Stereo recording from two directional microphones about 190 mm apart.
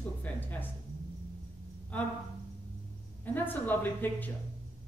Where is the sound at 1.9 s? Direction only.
10° left (ahead or behind).